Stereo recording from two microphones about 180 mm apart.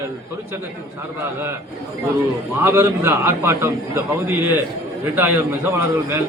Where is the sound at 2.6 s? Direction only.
15° right (ahead or behind).